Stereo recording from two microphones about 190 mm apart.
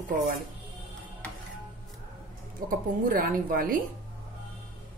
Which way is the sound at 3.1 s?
50° right (ahead or behind).